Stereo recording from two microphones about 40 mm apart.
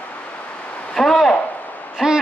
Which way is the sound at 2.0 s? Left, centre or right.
Centre.